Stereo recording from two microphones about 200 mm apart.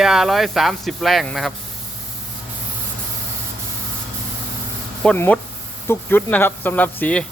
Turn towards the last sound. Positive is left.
turn(degrees=10)  # may be behind; listen again after turning